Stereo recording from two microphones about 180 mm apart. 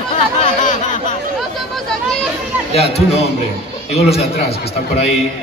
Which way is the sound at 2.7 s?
35° left (ahead or behind).